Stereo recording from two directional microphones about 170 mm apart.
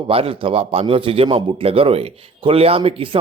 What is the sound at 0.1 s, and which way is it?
A man's voice, 35° right (ahead or behind).